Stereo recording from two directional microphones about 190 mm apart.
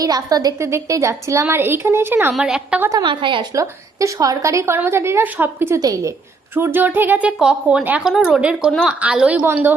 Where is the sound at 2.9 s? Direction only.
20° right (ahead or behind).